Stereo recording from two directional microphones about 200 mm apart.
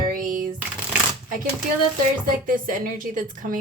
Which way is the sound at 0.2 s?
40° right (ahead or behind).